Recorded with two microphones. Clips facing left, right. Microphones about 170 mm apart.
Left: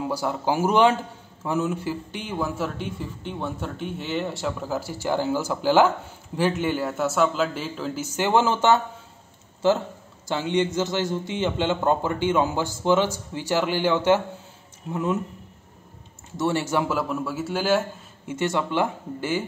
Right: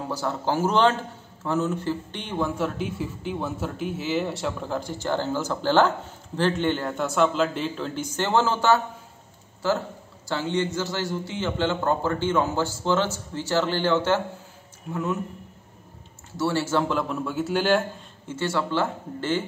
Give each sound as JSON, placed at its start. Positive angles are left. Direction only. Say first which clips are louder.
{"t": 0.1, "sound": "a man's voice", "louder": "right 1 dB", "side_deg": 10}
{"t": 16.3, "sound": "a man's voice", "louder": "left 1 dB", "side_deg": 20}
{"t": 18.3, "sound": "a man's voice", "louder": "left 1 dB", "side_deg": 20}